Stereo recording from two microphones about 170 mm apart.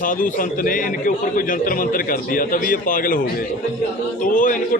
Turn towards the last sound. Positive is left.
turn(degrees=50)  # may be behind; listen again after turning